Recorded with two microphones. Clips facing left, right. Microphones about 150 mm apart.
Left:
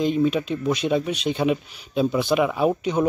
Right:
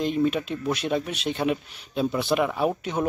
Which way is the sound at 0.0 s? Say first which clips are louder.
Left 3 dB; centre (ahead or behind).